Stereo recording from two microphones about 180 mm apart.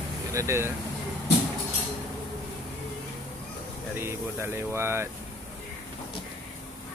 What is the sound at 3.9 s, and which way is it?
Speech, 15° right (ahead or behind).